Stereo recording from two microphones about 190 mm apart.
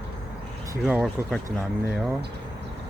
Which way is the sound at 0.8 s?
5° right (ahead or behind).